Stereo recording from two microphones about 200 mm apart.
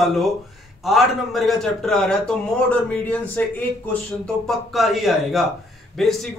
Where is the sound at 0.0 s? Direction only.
Centre (ahead or behind).